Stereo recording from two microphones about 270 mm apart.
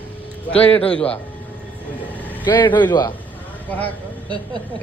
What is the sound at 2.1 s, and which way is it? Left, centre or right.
Vehicle, centre.